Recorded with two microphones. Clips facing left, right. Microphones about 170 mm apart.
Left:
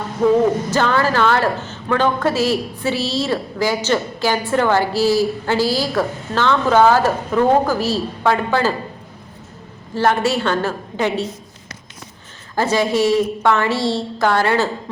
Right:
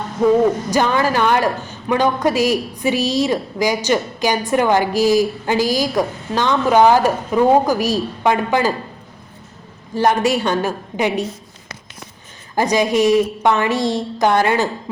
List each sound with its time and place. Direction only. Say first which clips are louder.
0.2 s a man's voice: right 1 dB; 10° right (ahead or behind)
9.9 s a man's voice: right 1 dB; 15° right (ahead or behind)
12.5 s a man's voice: right 1 dB; 15° right (ahead or behind)